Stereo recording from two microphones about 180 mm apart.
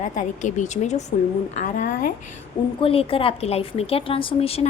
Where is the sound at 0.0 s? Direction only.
45° left (ahead or behind).